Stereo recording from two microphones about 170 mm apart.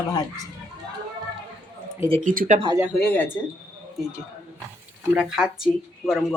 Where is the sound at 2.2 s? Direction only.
50° right (ahead or behind).